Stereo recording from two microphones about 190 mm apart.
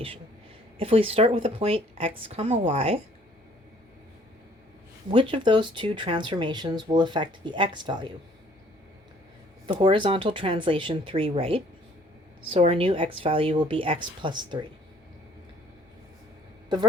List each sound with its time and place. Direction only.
0.8 s speech: 30° right (ahead or behind)
5.1 s speech: 25° right (ahead or behind)
9.6 s speech: 25° right (ahead or behind)